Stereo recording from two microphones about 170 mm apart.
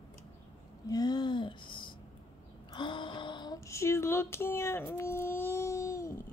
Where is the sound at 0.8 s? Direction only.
20° left (ahead or behind).